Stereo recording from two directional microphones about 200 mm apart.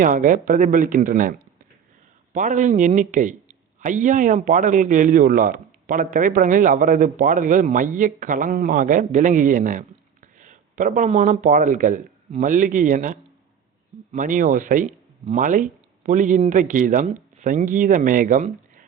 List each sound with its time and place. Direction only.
0.0 s a man's voice: 40° right (ahead or behind)